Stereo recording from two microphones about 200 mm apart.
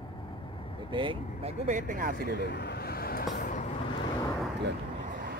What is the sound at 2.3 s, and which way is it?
Speech, 60° left (ahead or behind).